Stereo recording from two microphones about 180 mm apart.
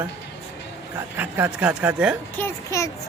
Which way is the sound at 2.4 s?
15° left (ahead or behind).